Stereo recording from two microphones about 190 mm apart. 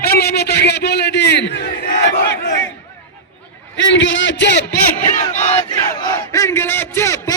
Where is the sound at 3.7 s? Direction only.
70° left (ahead or behind).